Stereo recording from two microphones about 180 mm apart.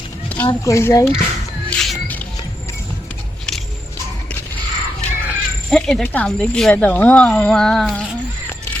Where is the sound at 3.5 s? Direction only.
5° left (ahead or behind).